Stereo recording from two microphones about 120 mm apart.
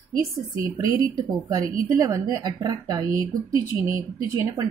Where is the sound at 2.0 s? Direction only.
30° right (ahead or behind).